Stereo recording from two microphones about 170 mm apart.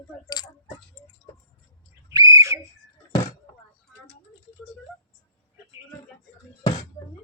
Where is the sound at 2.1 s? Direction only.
20° right (ahead or behind).